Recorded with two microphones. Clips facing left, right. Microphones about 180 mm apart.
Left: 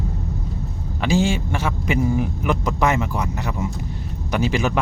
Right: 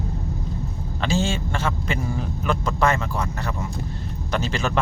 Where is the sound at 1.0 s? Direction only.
15° left (ahead or behind).